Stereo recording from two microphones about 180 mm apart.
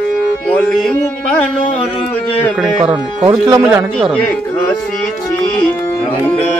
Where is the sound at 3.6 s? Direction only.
5° right (ahead or behind).